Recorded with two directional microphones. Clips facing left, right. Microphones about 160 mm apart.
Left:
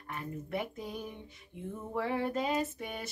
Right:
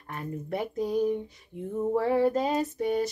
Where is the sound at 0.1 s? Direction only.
40° right (ahead or behind).